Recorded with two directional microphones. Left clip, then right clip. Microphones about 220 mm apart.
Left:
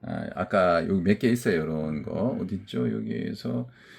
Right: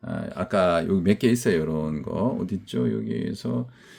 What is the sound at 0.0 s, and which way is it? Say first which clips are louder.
Speech: right 1 dB; 15° right (ahead or behind).